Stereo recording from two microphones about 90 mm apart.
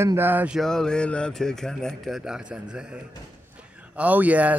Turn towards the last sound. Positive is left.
turn(degrees=-15)  # may be behind; listen again after turning